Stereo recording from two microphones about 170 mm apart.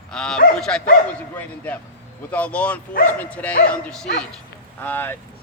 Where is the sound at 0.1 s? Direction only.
5° left (ahead or behind).